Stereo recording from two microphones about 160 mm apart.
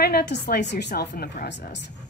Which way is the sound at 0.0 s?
80° left.